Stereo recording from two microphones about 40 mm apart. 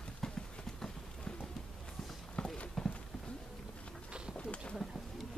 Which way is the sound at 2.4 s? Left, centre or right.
Left.